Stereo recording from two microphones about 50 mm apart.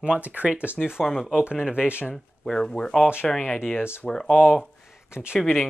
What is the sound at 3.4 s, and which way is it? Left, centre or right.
Speech, left.